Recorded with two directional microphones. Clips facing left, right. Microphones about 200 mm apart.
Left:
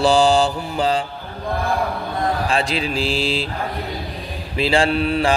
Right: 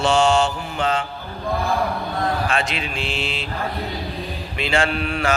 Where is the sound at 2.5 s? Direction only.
30° left (ahead or behind).